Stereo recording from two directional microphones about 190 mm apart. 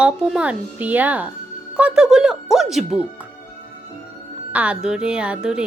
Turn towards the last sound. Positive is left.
turn(degrees=-5)  # may be behind; listen again after turning